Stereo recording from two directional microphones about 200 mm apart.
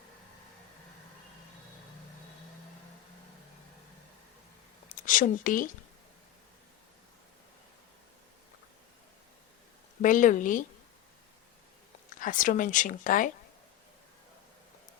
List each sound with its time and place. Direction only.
4.9 s a woman's voice: 40° left (ahead or behind)
10.0 s speech: 40° left (ahead or behind)
12.2 s speech: 40° left (ahead or behind)